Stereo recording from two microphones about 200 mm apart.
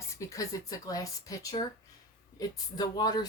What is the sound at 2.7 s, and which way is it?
Speech, 20° left (ahead or behind).